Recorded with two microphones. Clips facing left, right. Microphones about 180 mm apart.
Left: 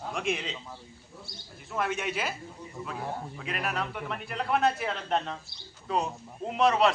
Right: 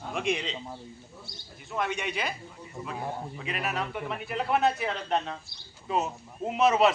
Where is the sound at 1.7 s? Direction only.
5° left (ahead or behind).